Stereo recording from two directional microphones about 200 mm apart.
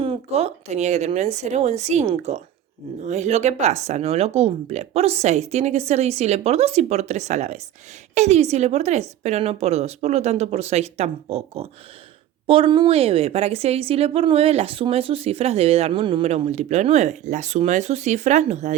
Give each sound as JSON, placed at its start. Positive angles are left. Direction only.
{"t": 0.0, "sound": "a woman's voice", "side_deg": -30}